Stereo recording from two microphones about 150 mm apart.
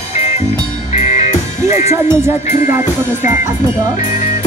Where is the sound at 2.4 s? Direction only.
55° left (ahead or behind).